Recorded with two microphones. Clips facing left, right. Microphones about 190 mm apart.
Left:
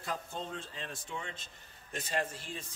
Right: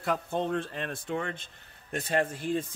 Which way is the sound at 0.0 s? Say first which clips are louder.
Right 10 dB; 65° right (ahead or behind).